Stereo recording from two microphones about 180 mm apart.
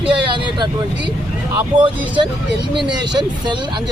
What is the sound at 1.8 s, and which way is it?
Speech, 25° right (ahead or behind).